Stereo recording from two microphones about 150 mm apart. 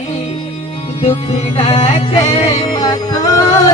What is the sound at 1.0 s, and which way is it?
Music, 40° left (ahead or behind).